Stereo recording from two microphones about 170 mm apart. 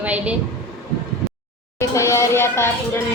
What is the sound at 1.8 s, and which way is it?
Speech, 15° left (ahead or behind).